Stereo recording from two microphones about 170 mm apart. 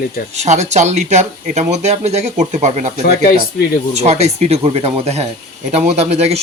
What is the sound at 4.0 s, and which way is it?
A man's voice, 40° right (ahead or behind).